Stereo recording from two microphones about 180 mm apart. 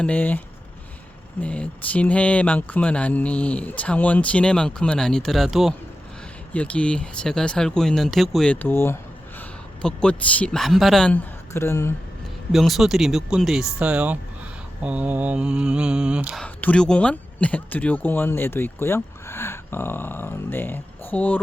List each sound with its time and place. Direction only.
0.0 s speech: 10° left (ahead or behind)
12.5 s speech: centre (ahead or behind)
16.4 s speech: 5° left (ahead or behind)